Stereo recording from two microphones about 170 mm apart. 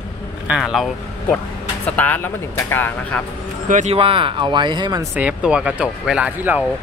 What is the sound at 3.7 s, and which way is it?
Speech, 40° right (ahead or behind).